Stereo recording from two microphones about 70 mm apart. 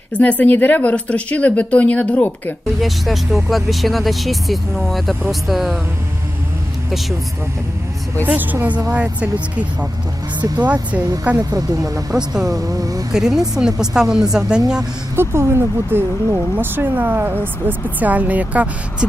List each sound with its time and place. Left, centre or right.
0.1 s speech: left
2.8 s speech: centre
8.4 s speech: right
11.0 s speech: right
12.1 s speech: centre
12.5 s speech: right
13.1 s speech: centre
15.1 s speech: right; by 19.0 s centre